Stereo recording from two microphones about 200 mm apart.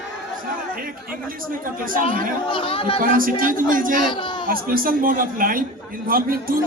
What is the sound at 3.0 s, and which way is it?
A man's voice, 45° right (ahead or behind).